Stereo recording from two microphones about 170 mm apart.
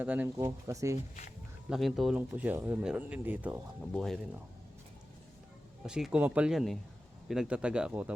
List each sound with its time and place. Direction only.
0.0 s speech: 10° right (ahead or behind)
1.7 s speech: centre (ahead or behind)
3.9 s speech: centre (ahead or behind)
5.8 s speech: 5° right (ahead or behind)